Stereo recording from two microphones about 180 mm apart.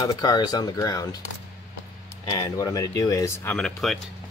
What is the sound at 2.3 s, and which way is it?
Speech, 20° left (ahead or behind).